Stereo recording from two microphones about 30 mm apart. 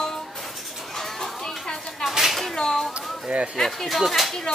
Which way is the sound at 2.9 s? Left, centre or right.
Right.